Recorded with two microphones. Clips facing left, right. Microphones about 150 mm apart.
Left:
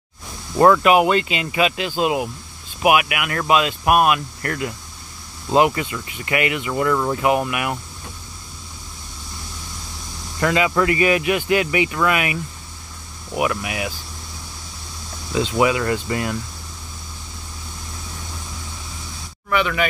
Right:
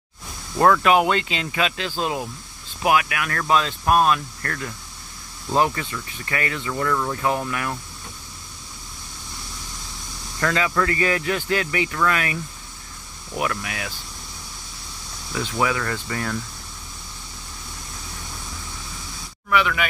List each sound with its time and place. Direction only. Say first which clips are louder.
0.6 s speech: left 3 dB; 5° left (ahead or behind)
10.4 s speech: left 4 dB; 15° left (ahead or behind)
13.4 s speech: left 4 dB; 10° left (ahead or behind)
15.3 s speech: left 5 dB; 15° left (ahead or behind)
19.5 s speech: left 2 dB; centre (ahead or behind)